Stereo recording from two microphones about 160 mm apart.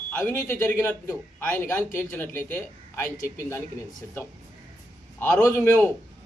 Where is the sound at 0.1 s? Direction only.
15° left (ahead or behind).